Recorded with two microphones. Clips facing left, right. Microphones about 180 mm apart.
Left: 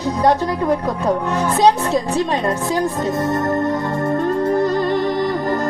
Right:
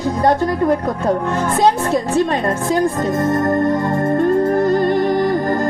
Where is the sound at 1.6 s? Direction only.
50° right (ahead or behind).